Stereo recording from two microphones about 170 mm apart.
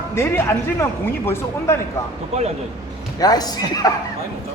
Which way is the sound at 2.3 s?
40° right (ahead or behind).